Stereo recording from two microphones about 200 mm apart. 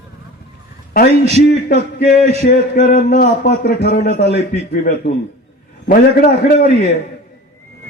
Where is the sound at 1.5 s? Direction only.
55° left (ahead or behind).